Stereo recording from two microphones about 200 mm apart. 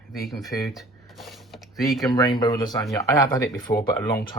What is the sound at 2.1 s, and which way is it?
Speech, 25° left (ahead or behind).